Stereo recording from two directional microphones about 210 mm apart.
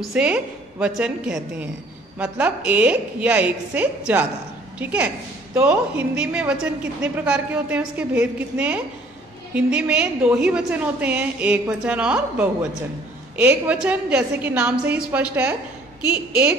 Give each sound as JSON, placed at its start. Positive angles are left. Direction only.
{"t": 0.1, "sound": "a woman's voice", "side_deg": -5}